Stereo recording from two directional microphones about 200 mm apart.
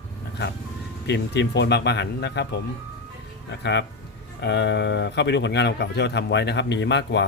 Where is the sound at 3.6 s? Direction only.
60° left (ahead or behind).